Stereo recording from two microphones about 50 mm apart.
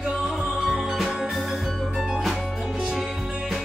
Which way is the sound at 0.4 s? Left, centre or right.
Centre.